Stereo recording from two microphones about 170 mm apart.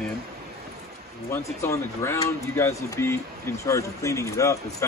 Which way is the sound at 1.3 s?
15° left (ahead or behind).